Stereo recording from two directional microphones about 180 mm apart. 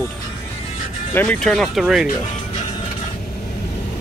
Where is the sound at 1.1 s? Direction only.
10° left (ahead or behind).